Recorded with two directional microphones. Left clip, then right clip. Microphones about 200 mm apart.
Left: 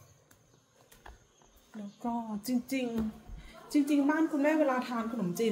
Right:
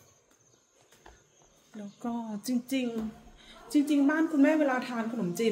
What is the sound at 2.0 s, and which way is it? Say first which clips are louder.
Speech: even; 15° right (ahead or behind).